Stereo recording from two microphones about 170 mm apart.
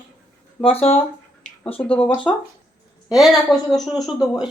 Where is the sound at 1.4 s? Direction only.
45° left (ahead or behind).